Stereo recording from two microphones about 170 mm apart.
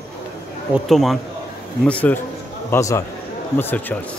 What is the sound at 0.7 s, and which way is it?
A man's voice, centre (ahead or behind).